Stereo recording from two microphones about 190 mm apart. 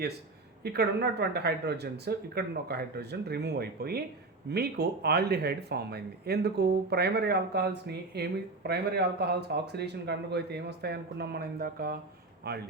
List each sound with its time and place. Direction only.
0.6 s speech: 60° right (ahead or behind)